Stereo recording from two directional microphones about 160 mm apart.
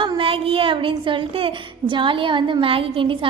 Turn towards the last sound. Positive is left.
turn(degrees=-35)  # may be behind; listen again after turning